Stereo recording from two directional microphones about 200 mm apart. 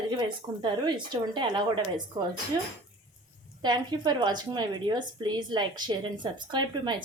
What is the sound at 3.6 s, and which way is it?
A woman's voice, 20° right (ahead or behind).